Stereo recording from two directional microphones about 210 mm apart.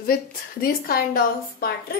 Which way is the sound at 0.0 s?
45° left (ahead or behind).